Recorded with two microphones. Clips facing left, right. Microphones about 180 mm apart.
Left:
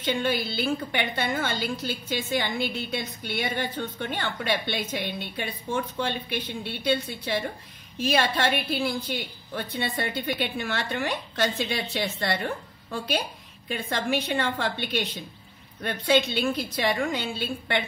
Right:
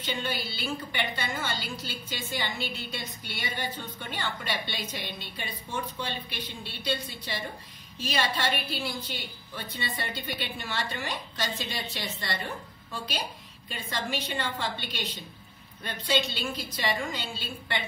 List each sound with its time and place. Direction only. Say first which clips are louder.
0.0 s a woman's voice: left 7 dB; 55° left (ahead or behind)